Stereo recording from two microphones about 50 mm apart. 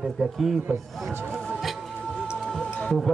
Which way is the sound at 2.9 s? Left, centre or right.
Centre.